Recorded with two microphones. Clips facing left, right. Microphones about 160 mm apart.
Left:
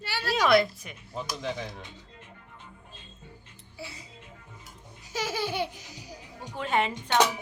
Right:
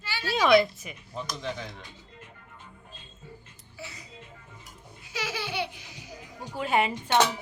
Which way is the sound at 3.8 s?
30° left (ahead or behind).